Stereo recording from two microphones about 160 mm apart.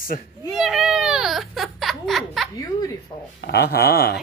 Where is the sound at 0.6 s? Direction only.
Centre (ahead or behind).